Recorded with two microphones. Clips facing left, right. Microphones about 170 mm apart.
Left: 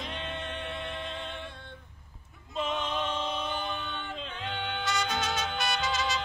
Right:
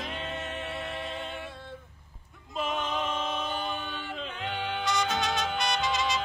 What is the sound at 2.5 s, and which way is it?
Male singing, 5° right (ahead or behind).